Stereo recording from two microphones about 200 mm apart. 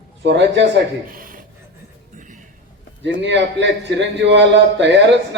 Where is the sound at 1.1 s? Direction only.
45° right (ahead or behind).